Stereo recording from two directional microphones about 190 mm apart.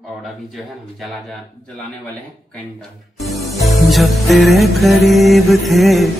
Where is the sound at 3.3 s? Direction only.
Centre (ahead or behind).